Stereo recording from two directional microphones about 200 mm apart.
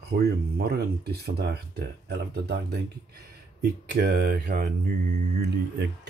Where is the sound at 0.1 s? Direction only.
50° right (ahead or behind).